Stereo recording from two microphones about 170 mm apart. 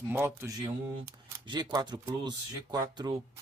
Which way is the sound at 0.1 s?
10° right (ahead or behind).